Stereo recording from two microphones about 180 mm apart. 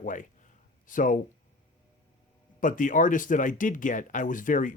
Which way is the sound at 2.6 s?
45° left (ahead or behind).